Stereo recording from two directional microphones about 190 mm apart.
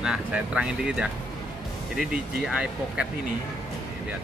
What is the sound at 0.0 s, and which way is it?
Speech, 5° right (ahead or behind).